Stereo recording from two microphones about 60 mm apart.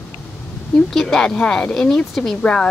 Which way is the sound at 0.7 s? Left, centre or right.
Centre.